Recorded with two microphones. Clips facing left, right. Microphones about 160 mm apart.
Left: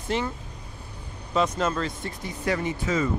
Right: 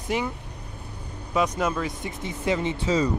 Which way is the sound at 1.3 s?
10° right (ahead or behind).